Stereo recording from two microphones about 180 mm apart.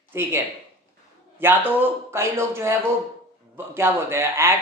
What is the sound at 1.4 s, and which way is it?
Speech, 10° right (ahead or behind).